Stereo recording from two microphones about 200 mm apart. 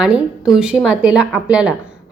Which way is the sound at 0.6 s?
5° right (ahead or behind).